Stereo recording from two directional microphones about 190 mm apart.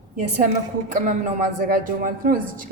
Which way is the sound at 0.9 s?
45° right (ahead or behind).